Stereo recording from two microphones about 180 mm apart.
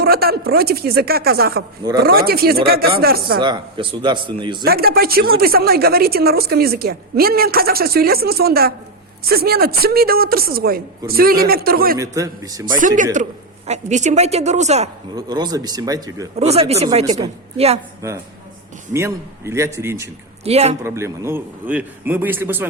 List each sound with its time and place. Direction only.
0.0 s speech: 60° right (ahead or behind)
3.4 s speech: 25° right (ahead or behind)
4.6 s speech: 55° right (ahead or behind)
11.9 s speech: 20° right (ahead or behind)
13.2 s a man's voice: 45° right (ahead or behind)
15.1 s speech: 25° right (ahead or behind)
16.4 s a woman's voice: 35° right (ahead or behind)
18.9 s a man's voice: 15° right (ahead or behind)
20.4 s a woman's voice: 35° right (ahead or behind)
20.8 s a man's voice: 15° right (ahead or behind)